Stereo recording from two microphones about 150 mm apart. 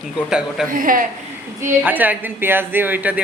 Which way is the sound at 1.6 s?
10° right (ahead or behind).